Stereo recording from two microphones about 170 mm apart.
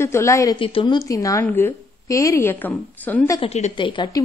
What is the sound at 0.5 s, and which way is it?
Speech, 30° left (ahead or behind).